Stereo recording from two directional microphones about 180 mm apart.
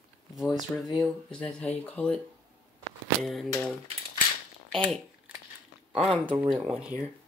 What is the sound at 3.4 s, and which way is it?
Speech, 10° left (ahead or behind).